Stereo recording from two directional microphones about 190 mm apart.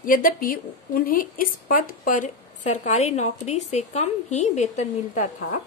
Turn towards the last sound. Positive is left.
turn(degrees=40)  # may be behind; listen again after turning